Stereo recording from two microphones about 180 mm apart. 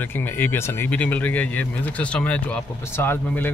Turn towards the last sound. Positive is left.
turn(degrees=10)  # may be behind; listen again after turning